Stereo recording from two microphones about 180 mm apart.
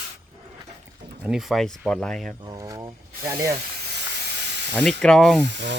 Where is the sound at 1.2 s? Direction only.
Centre (ahead or behind).